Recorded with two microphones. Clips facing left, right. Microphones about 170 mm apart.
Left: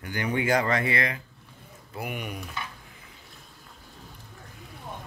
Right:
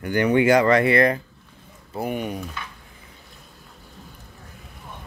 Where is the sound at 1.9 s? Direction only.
35° right (ahead or behind).